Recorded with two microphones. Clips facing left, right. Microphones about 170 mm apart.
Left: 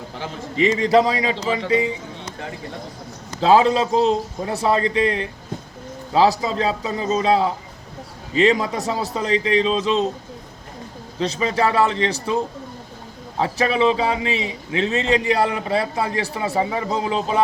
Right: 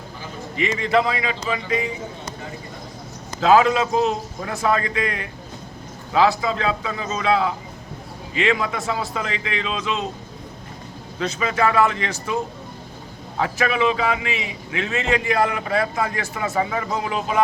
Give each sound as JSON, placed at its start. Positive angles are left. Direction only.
{"t": 0.5, "sound": "a man's voice", "side_deg": 35}
{"t": 3.4, "sound": "a man's voice", "side_deg": 30}
{"t": 11.2, "sound": "a man's voice", "side_deg": 30}
{"t": 13.4, "sound": "a man's voice", "side_deg": 30}